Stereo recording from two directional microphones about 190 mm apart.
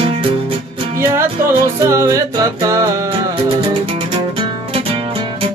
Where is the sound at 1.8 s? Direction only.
15° right (ahead or behind).